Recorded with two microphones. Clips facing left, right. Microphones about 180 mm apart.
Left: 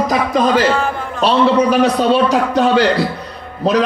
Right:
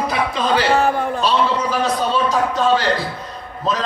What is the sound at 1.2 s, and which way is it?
A man's voice, 65° left (ahead or behind).